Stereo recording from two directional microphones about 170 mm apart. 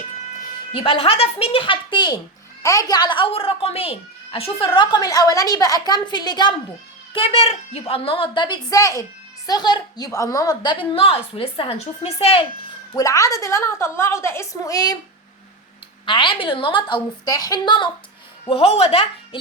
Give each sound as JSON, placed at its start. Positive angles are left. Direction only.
{"t": 0.7, "sound": "a woman's voice", "side_deg": 35}
{"t": 12.9, "sound": "a woman's voice", "side_deg": 20}
{"t": 16.0, "sound": "a woman's voice", "side_deg": 30}
{"t": 18.4, "sound": "a woman's voice", "side_deg": 35}